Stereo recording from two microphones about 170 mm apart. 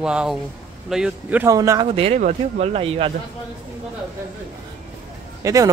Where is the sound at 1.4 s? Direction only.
20° right (ahead or behind).